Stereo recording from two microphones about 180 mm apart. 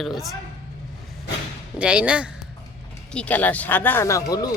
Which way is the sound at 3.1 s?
5° left (ahead or behind).